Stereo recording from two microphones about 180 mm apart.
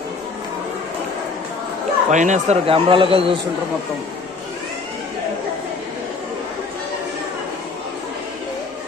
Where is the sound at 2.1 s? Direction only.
45° right (ahead or behind).